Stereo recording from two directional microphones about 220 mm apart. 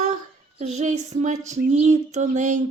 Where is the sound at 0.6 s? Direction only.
30° right (ahead or behind).